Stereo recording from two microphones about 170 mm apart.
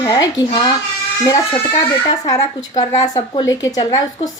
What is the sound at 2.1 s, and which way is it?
A woman's voice, 20° left (ahead or behind).